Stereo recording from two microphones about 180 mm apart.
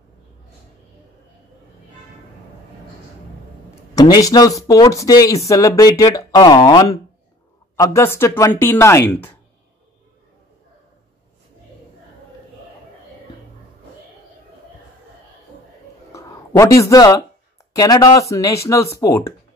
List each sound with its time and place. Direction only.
3.9 s speech: 20° left (ahead or behind)
16.1 s a sound: 15° left (ahead or behind)
17.7 s speech: 20° left (ahead or behind)